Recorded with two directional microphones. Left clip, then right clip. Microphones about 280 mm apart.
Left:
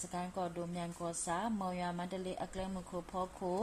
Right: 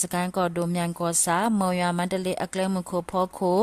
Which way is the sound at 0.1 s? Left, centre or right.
Right.